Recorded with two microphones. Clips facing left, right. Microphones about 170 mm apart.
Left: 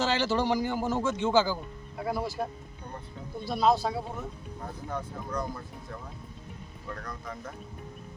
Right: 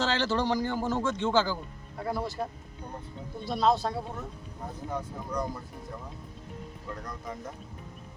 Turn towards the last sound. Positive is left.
turn(degrees=-20)  # may be behind; listen again after turning